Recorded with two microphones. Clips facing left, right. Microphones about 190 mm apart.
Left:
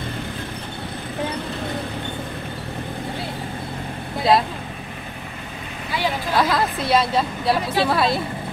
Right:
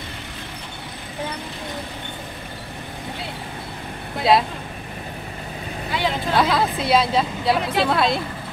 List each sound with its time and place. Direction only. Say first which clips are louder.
4.2 s speech: even; centre (ahead or behind)
6.0 s speech: right 1 dB; centre (ahead or behind)